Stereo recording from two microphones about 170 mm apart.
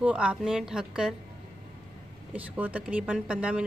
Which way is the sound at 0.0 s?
5° right (ahead or behind).